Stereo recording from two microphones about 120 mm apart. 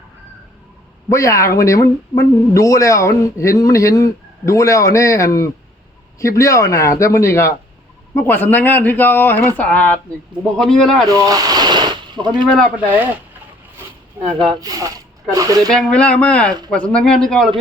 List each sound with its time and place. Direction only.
1.1 s a man's voice: 25° left (ahead or behind); by 11.0 s 5° left (ahead or behind)
11.2 s a sound: 30° right (ahead or behind)
12.7 s speech: 15° right (ahead or behind)
14.2 s speech: 20° right (ahead or behind)
14.6 s speech: 30° right (ahead or behind)
15.7 s a man's voice: 10° left (ahead or behind)